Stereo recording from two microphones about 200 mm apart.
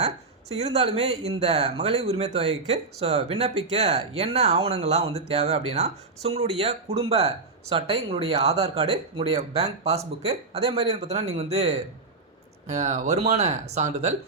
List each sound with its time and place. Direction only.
0.0 s speech: 35° right (ahead or behind)